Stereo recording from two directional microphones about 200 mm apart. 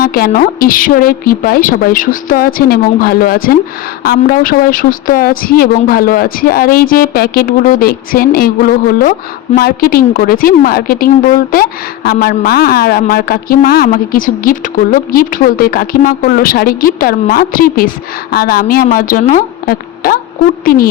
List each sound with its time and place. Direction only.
0.0 s a woman's voice: 50° left (ahead or behind)
9.6 s a woman's voice: 50° left (ahead or behind)